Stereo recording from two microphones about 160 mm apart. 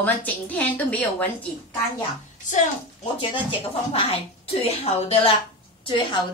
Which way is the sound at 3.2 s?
35° left (ahead or behind).